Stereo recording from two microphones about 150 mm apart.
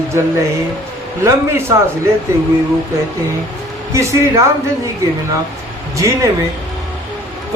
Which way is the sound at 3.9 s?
20° right (ahead or behind).